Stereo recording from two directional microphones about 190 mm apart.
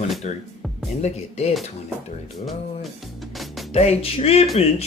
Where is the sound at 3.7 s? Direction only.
35° left (ahead or behind).